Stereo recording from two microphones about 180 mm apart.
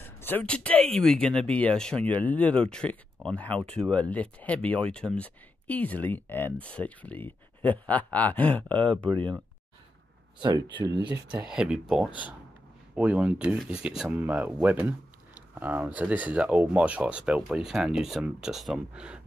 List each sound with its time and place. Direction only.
0.0 s speech: 10° left (ahead or behind)
10.4 s speech: 25° right (ahead or behind)
11.4 s speech: 5° right (ahead or behind)
12.9 s speech: 10° right (ahead or behind)